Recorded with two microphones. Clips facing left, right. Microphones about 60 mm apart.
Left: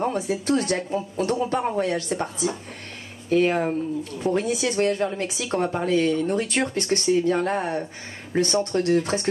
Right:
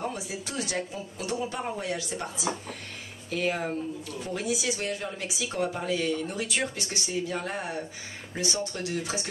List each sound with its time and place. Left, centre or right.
0.0 s a woman's voice: left